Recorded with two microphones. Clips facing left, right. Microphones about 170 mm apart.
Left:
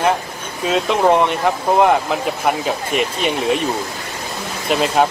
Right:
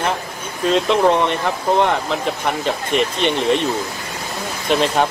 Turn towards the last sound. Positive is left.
turn(degrees=5)  # may be behind; listen again after turning